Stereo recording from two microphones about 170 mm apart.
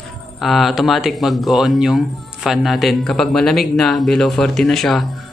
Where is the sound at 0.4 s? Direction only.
Centre (ahead or behind).